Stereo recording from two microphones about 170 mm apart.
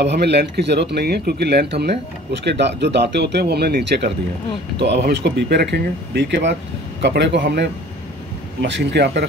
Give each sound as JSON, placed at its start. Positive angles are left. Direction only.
{"t": 0.0, "sound": "speech", "side_deg": -80}
{"t": 4.7, "sound": "speech", "side_deg": -85}
{"t": 8.6, "sound": "speech", "side_deg": -90}